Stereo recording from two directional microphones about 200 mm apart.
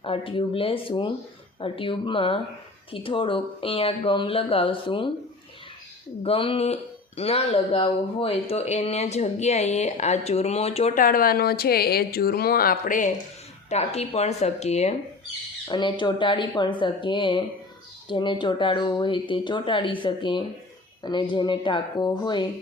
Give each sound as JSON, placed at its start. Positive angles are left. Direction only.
{"t": 0.0, "sound": "speech", "side_deg": 25}
{"t": 6.2, "sound": "speech", "side_deg": 25}
{"t": 13.7, "sound": "speech", "side_deg": 30}
{"t": 15.6, "sound": "speech", "side_deg": 20}